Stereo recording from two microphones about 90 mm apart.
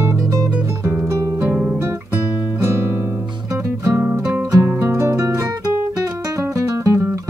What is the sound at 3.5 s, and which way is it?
Music, 35° right (ahead or behind).